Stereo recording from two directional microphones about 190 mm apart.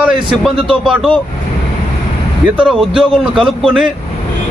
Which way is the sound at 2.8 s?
25° right (ahead or behind).